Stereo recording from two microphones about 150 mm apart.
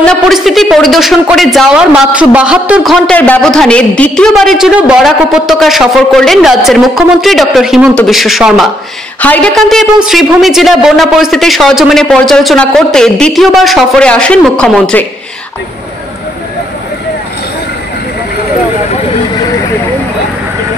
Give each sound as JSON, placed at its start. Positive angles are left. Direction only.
{"t": 0.0, "sound": "a woman's voice", "side_deg": 0}
{"t": 9.2, "sound": "a woman's voice", "side_deg": 10}